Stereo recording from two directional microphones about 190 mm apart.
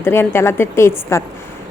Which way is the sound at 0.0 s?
15° left (ahead or behind).